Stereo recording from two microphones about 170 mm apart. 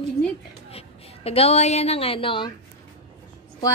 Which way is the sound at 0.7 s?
35° left (ahead or behind).